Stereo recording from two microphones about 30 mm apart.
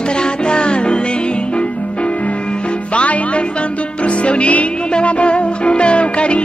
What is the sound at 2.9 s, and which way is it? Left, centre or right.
Music, left.